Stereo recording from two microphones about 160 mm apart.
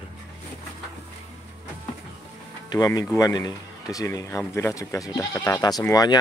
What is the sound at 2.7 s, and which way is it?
Speech, 20° left (ahead or behind).